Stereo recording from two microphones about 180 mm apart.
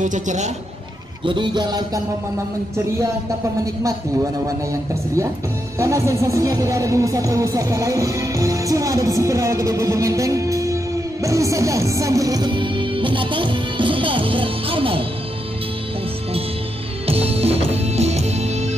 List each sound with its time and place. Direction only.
0.0 s a woman's voice: 40° right (ahead or behind)
1.2 s music: 25° right (ahead or behind)
5.8 s music: 15° right (ahead or behind)
17.0 s music: 35° right (ahead or behind)